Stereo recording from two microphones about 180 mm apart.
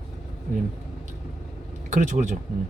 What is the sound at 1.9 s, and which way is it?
Speech, 45° right (ahead or behind).